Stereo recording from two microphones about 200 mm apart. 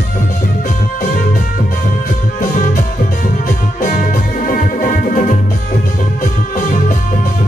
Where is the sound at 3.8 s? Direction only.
45° left (ahead or behind).